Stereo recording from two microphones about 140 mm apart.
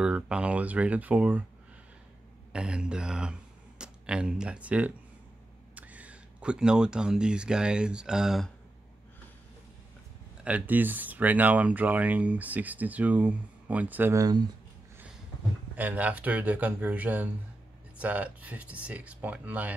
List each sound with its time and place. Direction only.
0.0 s speech: 5° right (ahead or behind)
2.5 s speech: 5° right (ahead or behind)
10.4 s speech: 10° right (ahead or behind)
14.1 s speech: 25° right (ahead or behind)
15.7 s speech: 10° right (ahead or behind)